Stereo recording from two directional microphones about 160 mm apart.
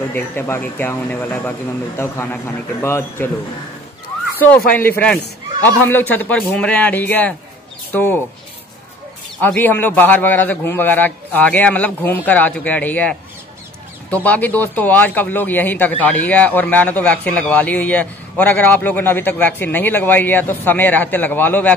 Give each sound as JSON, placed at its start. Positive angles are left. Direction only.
{"t": 0.1, "sound": "speech", "side_deg": 15}
{"t": 4.6, "sound": "speech", "side_deg": 10}
{"t": 9.4, "sound": "speech", "side_deg": 10}